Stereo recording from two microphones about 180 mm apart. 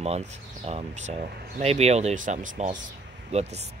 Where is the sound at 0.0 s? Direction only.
35° right (ahead or behind).